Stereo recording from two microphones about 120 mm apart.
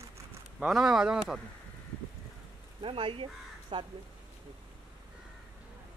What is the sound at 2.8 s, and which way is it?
Speech, 50° right (ahead or behind).